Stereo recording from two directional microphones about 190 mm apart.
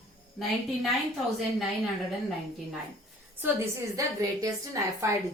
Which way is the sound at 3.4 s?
15° right (ahead or behind).